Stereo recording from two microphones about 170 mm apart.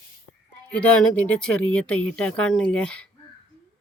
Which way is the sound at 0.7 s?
10° left (ahead or behind).